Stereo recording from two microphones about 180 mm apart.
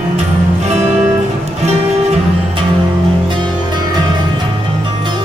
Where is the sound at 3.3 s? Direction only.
25° right (ahead or behind).